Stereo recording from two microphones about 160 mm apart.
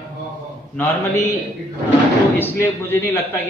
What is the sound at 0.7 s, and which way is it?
Speech, 15° left (ahead or behind).